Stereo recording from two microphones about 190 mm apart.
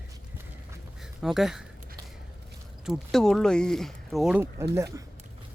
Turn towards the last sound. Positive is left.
turn(degrees=-15)  # may be behind; listen again after turning